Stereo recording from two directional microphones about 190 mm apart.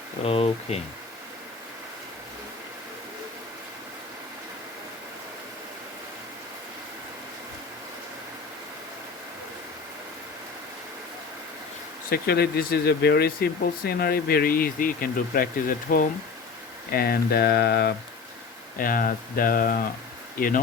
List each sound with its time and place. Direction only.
0.3 s speech: 30° left (ahead or behind)
12.1 s speech: 55° left (ahead or behind)
18.8 s speech: 50° left (ahead or behind)